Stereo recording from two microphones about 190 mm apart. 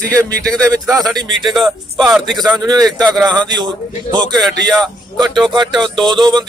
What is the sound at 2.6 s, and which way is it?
A man's voice, 20° right (ahead or behind).